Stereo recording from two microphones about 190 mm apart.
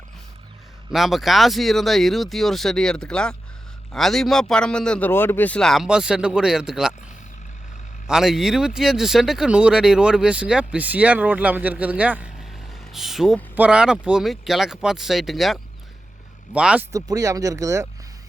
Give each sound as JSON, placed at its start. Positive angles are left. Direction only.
{"t": 0.9, "sound": "speech", "side_deg": 0}
{"t": 8.0, "sound": "speech", "side_deg": -5}
{"t": 16.9, "sound": "speech", "side_deg": -15}